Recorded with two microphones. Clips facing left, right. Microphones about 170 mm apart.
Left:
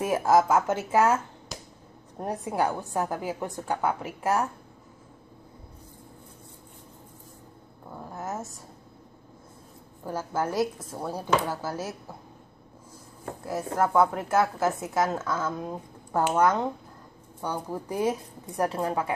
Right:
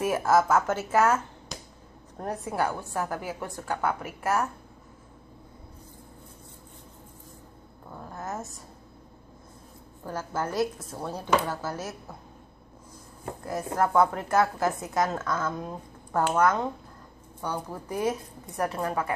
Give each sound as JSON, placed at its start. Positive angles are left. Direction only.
{"t": 0.0, "sound": "a woman's voice", "side_deg": 15}
{"t": 7.9, "sound": "a sound", "side_deg": 10}
{"t": 10.0, "sound": "a woman's voice", "side_deg": 10}
{"t": 13.5, "sound": "a woman's voice", "side_deg": 5}